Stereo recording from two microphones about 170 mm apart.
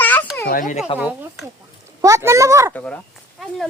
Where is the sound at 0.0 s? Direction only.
10° left (ahead or behind).